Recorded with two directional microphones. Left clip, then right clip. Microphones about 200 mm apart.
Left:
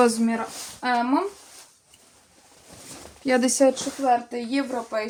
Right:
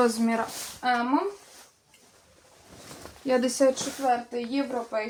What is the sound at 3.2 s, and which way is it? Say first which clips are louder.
Speech: left 3 dB; 40° left (ahead or behind).